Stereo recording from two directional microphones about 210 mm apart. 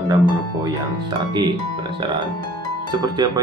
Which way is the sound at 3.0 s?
20° right (ahead or behind).